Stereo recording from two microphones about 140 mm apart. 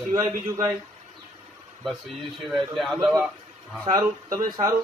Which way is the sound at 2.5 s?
Centre (ahead or behind).